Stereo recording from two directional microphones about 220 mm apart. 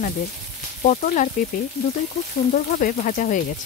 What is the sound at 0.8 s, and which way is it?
Speech, 35° left (ahead or behind).